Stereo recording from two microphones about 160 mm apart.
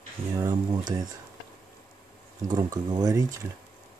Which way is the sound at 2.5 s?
25° right (ahead or behind).